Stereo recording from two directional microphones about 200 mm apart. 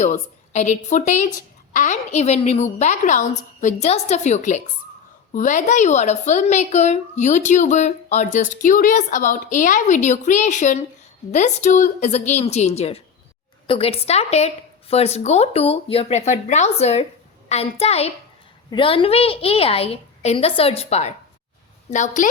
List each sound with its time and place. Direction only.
0.0 s a woman's voice: 35° left (ahead or behind)